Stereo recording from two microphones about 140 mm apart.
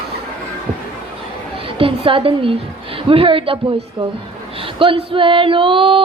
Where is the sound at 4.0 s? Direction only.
40° right (ahead or behind).